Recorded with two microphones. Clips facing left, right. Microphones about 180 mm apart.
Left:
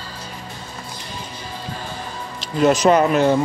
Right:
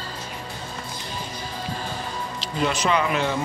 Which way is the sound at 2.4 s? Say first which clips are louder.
Left 9 dB; 45° left (ahead or behind).